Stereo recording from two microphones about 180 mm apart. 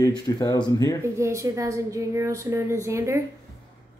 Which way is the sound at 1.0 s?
15° right (ahead or behind).